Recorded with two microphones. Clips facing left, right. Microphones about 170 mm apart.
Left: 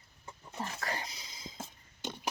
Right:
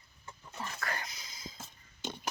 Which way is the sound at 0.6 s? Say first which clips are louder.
Left 2 dB; 30° left (ahead or behind).